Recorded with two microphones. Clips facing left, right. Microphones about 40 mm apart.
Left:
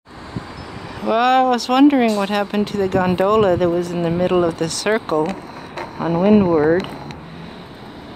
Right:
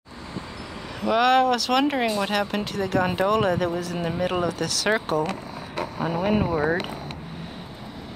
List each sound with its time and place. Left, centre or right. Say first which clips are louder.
1.0 s speech: left 4 dB; centre
5.9 s speech: left 10 dB; left